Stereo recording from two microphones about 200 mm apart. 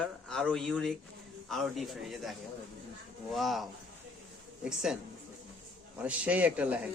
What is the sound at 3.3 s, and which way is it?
Speech, centre (ahead or behind).